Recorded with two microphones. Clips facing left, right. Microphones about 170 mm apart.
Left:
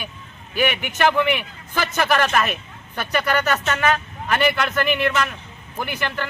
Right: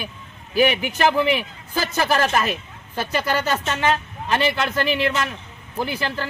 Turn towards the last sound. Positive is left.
turn(degrees=-30)  # may be behind; listen again after turning